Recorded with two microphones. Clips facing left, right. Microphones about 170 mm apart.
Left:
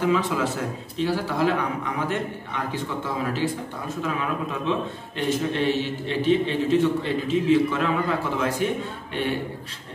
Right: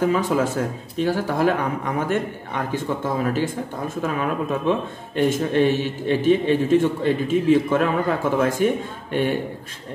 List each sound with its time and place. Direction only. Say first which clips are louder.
0.0 s a man's voice: right 3 dB; 45° right (ahead or behind)